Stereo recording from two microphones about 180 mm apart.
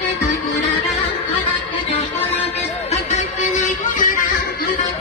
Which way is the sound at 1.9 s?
35° left (ahead or behind).